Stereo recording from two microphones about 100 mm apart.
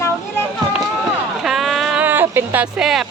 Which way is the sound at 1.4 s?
5° right (ahead or behind).